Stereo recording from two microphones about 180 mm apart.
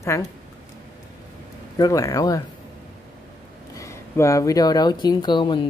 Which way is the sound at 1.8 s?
20° left (ahead or behind).